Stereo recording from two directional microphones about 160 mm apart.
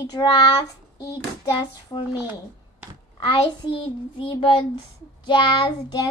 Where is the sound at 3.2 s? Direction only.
30° left (ahead or behind).